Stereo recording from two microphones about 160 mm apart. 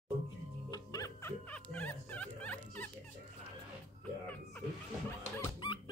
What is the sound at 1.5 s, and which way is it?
Music, 10° left (ahead or behind).